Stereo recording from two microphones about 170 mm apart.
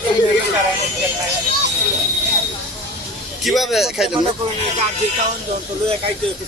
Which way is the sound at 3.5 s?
Centre (ahead or behind).